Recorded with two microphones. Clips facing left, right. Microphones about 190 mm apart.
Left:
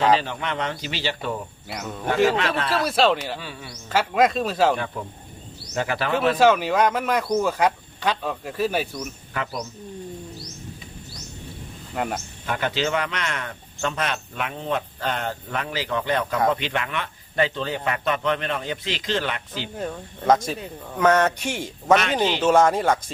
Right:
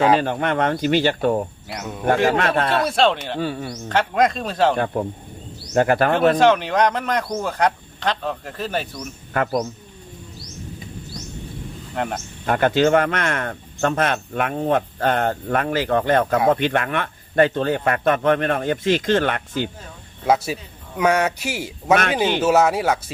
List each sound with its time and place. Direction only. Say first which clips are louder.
0.2 s speech: right 8 dB; 50° right (ahead or behind)
1.7 s speech: even; centre (ahead or behind)
2.3 s a man's voice: right 4 dB; 55° right (ahead or behind)
2.8 s speech: right 1 dB; 5° left (ahead or behind)
3.3 s speech: right 10 dB; 45° right (ahead or behind)
3.8 s speech: right 1 dB; 5° left (ahead or behind)
5.7 s speech: right 8 dB; 50° right (ahead or behind)
6.4 s speech: right 1 dB; 5° left (ahead or behind)
9.3 s speech: right 9 dB; 50° right (ahead or behind)
11.9 s speech: right 1 dB; centre (ahead or behind)
12.5 s speech: right 8 dB; 50° right (ahead or behind)
20.2 s a man's voice: even; 10° right (ahead or behind)